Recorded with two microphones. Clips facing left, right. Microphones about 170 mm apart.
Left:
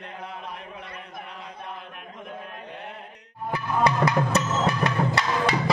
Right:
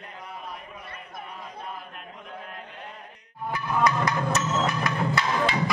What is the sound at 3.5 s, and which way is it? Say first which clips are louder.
Music: left 1 dB; 30° left (ahead or behind).